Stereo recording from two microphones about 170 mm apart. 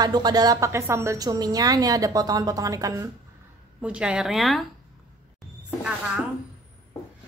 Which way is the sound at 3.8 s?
5° right (ahead or behind).